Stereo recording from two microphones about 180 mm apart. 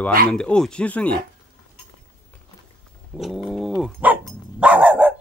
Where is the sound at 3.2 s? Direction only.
Centre (ahead or behind).